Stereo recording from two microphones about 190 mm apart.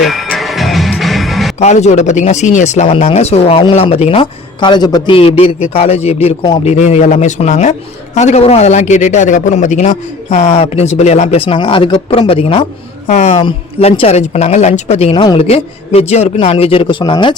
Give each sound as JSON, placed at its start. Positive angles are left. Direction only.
{"t": 0.0, "sound": "music", "side_deg": 0}
{"t": 1.5, "sound": "a man's voice", "side_deg": 35}